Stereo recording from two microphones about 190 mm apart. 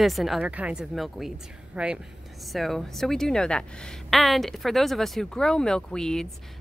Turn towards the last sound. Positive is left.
turn(degrees=5)  # may be behind; listen again after turning